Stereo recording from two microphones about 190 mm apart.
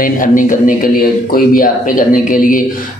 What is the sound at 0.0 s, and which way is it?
Speech, 45° left (ahead or behind).